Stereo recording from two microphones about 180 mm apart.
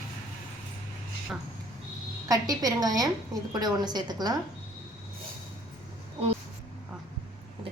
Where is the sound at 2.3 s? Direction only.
20° right (ahead or behind).